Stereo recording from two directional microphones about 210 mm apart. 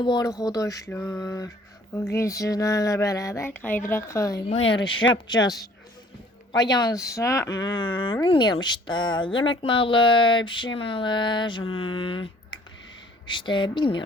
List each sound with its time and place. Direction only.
0.0 s speech: 20° left (ahead or behind)
4.4 s speech: 30° left (ahead or behind)